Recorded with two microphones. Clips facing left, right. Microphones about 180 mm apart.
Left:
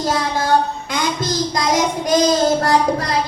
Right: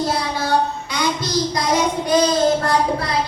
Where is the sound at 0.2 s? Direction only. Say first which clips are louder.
Left 3 dB; 45° left (ahead or behind).